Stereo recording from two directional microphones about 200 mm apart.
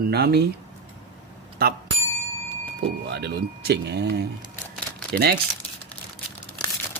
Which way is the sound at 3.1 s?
55° right (ahead or behind).